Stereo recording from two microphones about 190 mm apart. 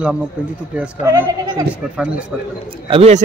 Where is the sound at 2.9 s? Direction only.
35° right (ahead or behind).